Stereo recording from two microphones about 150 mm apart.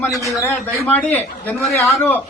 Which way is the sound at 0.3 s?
15° left (ahead or behind).